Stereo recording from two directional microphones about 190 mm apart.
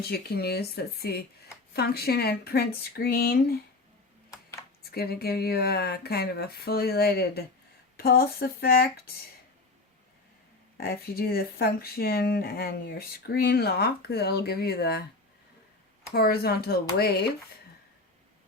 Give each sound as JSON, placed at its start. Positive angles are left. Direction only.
{"t": 0.0, "sound": "speech", "side_deg": 55}
{"t": 4.8, "sound": "speech", "side_deg": 55}
{"t": 10.8, "sound": "speech", "side_deg": 55}
{"t": 16.1, "sound": "speech", "side_deg": 55}